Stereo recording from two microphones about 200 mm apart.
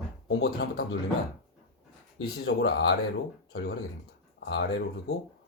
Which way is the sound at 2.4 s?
55° left (ahead or behind).